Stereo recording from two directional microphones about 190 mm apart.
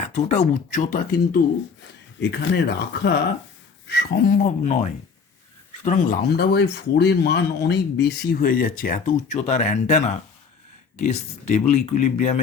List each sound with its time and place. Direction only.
0.0 s speech: 40° left (ahead or behind)
1.8 s speech: 65° left (ahead or behind); by 12.4 s 40° left (ahead or behind)